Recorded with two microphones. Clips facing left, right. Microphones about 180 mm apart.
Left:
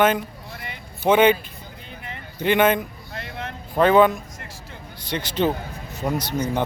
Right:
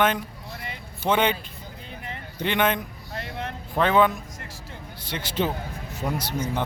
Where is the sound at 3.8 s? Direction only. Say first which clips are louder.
Left 5 dB; centre (ahead or behind).